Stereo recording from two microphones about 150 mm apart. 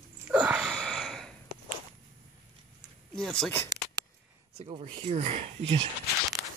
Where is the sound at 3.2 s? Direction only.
5° left (ahead or behind).